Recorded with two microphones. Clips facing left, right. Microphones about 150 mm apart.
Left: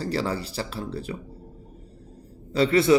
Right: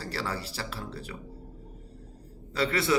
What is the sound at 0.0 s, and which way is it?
A man's voice, 20° left (ahead or behind).